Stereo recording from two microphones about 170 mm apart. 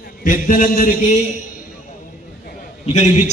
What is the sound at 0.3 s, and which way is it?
Speech, 50° left (ahead or behind).